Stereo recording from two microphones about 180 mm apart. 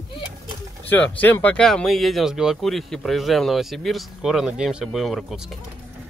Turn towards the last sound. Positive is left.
turn(degrees=0)  # may be behind; listen again after turning